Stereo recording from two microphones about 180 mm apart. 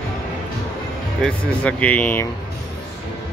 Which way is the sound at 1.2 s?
5° left (ahead or behind).